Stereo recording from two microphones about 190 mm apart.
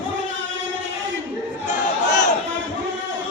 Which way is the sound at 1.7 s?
40° left (ahead or behind).